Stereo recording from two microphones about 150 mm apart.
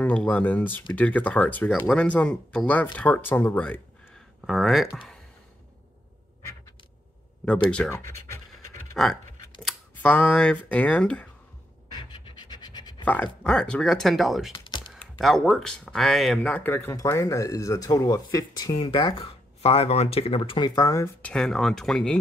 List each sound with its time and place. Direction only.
0.0 s speech: 10° left (ahead or behind)
7.9 s speech: 15° left (ahead or behind)
9.0 s speech: centre (ahead or behind)
12.0 s pant: 35° left (ahead or behind)
13.0 s speech: 10° left (ahead or behind)
14.5 s typing: 35° left (ahead or behind)
15.1 s speech: centre (ahead or behind); by 21.1 s 20° left (ahead or behind)
21.2 s speech: 5° left (ahead or behind)